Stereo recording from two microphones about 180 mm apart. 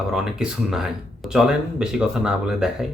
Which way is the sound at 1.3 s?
5° right (ahead or behind).